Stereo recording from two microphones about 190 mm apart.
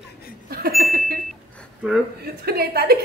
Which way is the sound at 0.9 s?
50° right (ahead or behind).